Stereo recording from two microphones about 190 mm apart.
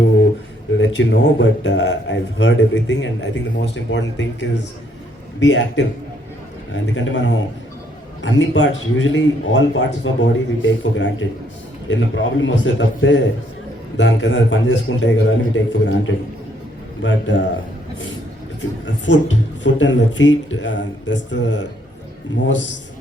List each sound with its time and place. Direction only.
0.8 s a man's voice: 75° left (ahead or behind)
17.0 s speech: 75° left (ahead or behind)
19.0 s speech: 75° left (ahead or behind)